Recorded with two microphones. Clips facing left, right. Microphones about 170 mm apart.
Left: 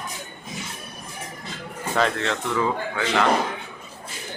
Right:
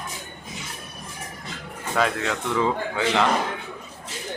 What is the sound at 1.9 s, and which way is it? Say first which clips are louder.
Speech: left 1 dB; 5° right (ahead or behind).